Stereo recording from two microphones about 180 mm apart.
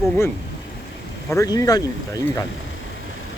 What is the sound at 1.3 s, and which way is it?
Speech, 20° left (ahead or behind).